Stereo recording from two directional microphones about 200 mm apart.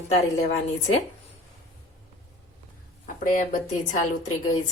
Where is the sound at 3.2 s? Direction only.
40° left (ahead or behind).